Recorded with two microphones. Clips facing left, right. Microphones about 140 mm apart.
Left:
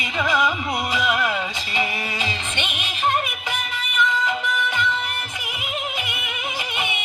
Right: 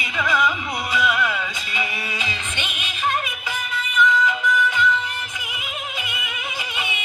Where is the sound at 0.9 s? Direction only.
20° left (ahead or behind).